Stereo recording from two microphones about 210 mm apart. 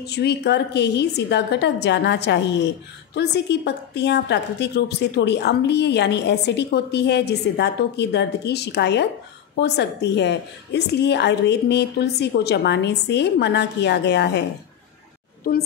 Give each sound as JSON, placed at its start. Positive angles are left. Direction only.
{"t": 0.0, "sound": "a woman's voice", "side_deg": 50}
{"t": 15.5, "sound": "a woman's voice", "side_deg": 45}